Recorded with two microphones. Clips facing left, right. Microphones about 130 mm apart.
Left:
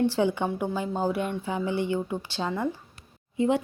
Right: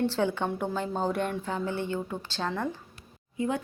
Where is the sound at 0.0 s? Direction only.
15° left (ahead or behind).